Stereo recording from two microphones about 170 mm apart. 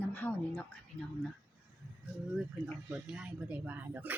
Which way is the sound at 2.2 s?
5° right (ahead or behind).